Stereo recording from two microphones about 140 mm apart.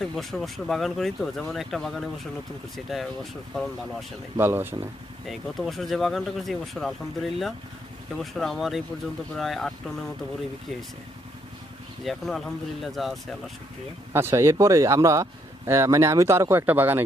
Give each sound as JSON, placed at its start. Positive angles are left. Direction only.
{"t": 0.0, "sound": "speech", "side_deg": 0}
{"t": 4.4, "sound": "speech", "side_deg": -15}
{"t": 5.2, "sound": "speech", "side_deg": 0}
{"t": 12.0, "sound": "speech", "side_deg": 0}
{"t": 14.1, "sound": "speech", "side_deg": -15}